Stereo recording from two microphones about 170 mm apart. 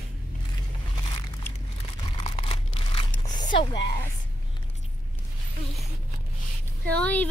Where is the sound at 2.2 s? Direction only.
30° left (ahead or behind).